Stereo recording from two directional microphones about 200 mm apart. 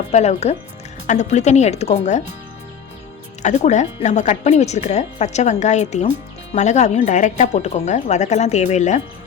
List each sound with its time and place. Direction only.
0.1 s speech: 35° left (ahead or behind)
3.4 s speech: 35° left (ahead or behind)